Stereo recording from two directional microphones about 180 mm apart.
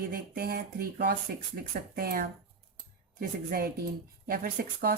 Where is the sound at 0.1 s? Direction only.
60° right (ahead or behind).